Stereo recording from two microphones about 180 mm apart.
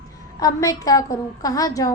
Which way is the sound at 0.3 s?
20° left (ahead or behind).